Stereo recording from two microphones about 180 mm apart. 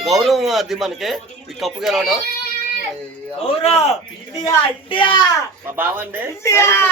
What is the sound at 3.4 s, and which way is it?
Speech, 35° left (ahead or behind).